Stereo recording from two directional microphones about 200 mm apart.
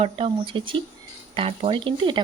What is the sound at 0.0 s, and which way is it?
Speech, 25° right (ahead or behind).